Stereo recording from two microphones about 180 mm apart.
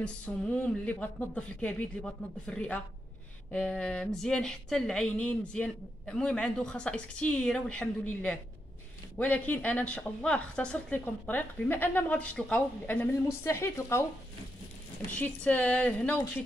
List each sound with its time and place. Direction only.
0.0 s speech: 5° left (ahead or behind)
15.0 s speech: 10° left (ahead or behind)